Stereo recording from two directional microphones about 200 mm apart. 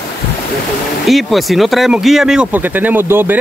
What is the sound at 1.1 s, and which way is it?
Speech, centre (ahead or behind).